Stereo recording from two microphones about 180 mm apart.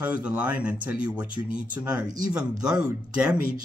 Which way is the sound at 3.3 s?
50° right (ahead or behind).